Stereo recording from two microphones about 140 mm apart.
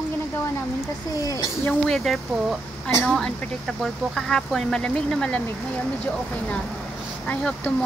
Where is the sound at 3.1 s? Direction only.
5° left (ahead or behind).